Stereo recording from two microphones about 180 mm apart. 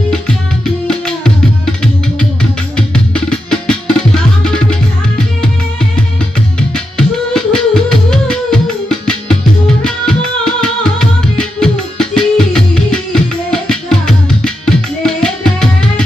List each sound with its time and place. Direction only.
0.9 s music: 5° left (ahead or behind)
6.6 s music: 5° left (ahead or behind)